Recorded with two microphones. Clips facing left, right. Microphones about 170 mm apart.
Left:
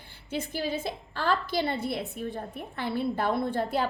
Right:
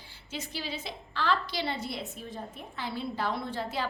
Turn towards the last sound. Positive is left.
turn(degrees=55)  # may be behind; listen again after turning